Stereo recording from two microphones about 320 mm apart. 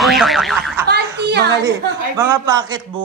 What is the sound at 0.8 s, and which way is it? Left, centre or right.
Speech, right.